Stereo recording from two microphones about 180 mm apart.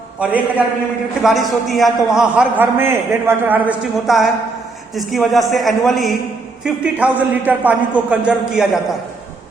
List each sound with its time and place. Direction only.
0.2 s a man's voice: 10° right (ahead or behind)